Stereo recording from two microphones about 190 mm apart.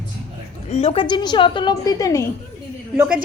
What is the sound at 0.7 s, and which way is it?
A woman's voice, 35° left (ahead or behind).